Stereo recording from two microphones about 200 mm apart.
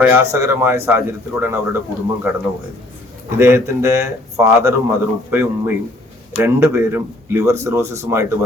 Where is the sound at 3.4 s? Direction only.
15° right (ahead or behind).